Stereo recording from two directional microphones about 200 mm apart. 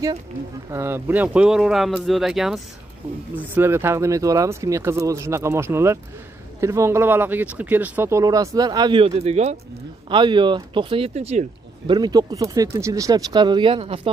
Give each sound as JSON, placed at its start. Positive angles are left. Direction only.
{"t": 0.7, "sound": "speech", "side_deg": -15}
{"t": 11.9, "sound": "speech", "side_deg": -20}